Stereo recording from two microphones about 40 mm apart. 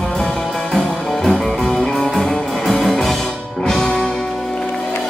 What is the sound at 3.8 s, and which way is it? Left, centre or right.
Music, left.